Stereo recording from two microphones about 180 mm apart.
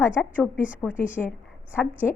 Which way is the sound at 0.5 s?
45° left (ahead or behind).